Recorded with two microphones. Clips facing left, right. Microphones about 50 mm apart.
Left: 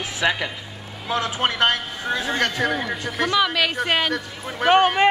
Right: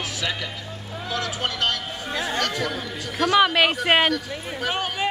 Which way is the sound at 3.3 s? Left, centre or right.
Right.